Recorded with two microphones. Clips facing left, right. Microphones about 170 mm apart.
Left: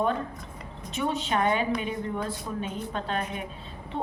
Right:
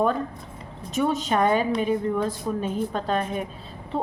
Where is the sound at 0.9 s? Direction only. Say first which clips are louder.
Right 5 dB; 40° right (ahead or behind).